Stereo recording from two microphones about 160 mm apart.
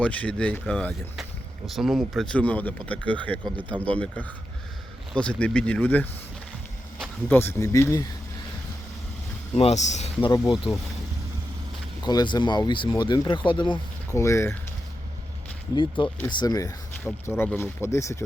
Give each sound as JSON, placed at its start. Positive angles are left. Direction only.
{"t": 0.0, "sound": "speech", "side_deg": 10}
{"t": 7.3, "sound": "speech", "side_deg": 15}
{"t": 9.6, "sound": "speech", "side_deg": 45}
{"t": 10.3, "sound": "speech", "side_deg": 25}
{"t": 12.0, "sound": "speech", "side_deg": 25}
{"t": 14.2, "sound": "speech", "side_deg": 15}
{"t": 15.7, "sound": "speech", "side_deg": 30}
{"t": 17.2, "sound": "speech", "side_deg": 15}